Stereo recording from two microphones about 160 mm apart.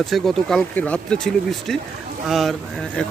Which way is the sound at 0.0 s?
Centre (ahead or behind).